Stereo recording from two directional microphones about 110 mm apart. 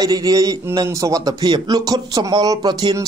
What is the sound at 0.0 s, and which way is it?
Speech, 35° right (ahead or behind).